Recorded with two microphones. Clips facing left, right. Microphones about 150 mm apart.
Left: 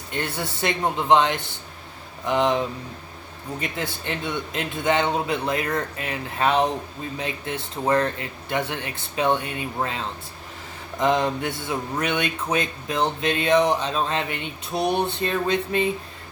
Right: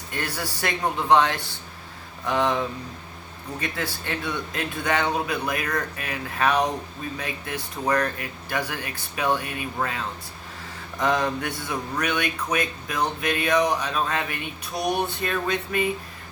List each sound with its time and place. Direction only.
0.1 s speech: 25° left (ahead or behind)